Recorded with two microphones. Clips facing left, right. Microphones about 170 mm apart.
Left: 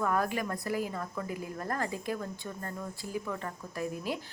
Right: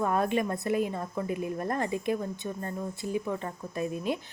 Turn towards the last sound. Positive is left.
turn(degrees=-20)  # may be behind; listen again after turning